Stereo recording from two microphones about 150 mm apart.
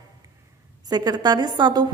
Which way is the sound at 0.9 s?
25° right (ahead or behind).